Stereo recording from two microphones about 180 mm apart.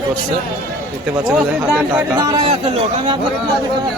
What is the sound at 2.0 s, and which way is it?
Speech, 15° right (ahead or behind).